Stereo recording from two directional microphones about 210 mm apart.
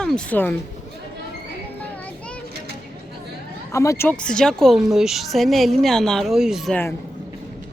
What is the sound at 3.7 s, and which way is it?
Speech, 15° left (ahead or behind).